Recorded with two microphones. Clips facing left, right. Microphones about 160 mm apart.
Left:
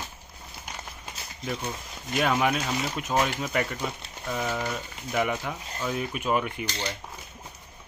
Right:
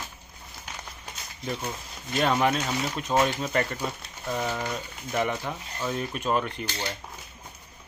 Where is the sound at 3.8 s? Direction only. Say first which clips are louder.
Even; 10° right (ahead or behind); by 6.7 s 10° left (ahead or behind).